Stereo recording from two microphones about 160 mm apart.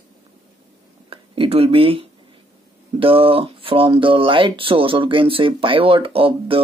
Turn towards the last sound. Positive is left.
turn(degrees=-35)  # may be behind; listen again after turning